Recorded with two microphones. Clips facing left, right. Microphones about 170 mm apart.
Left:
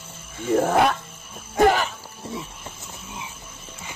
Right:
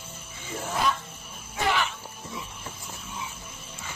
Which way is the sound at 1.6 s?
40° left (ahead or behind).